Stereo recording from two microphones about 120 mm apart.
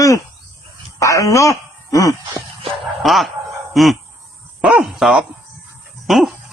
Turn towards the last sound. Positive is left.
turn(degrees=0)  # may be behind; listen again after turning